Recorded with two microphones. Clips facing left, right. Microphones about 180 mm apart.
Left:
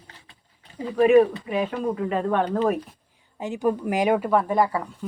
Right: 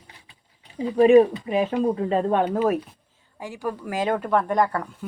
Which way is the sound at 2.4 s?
10° right (ahead or behind).